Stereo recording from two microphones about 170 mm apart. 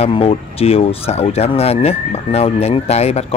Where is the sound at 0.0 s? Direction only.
35° left (ahead or behind).